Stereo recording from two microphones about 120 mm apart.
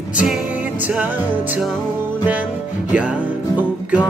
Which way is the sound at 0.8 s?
15° right (ahead or behind).